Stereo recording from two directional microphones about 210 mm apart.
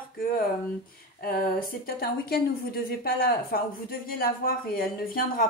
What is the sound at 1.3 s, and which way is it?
Speech, 45° left (ahead or behind).